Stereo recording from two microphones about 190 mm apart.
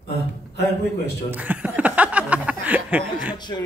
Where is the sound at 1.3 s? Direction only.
10° right (ahead or behind).